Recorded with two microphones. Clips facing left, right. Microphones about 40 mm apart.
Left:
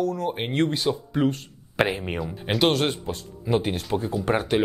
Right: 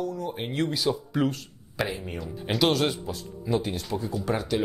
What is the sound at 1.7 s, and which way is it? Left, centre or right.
Speech, left.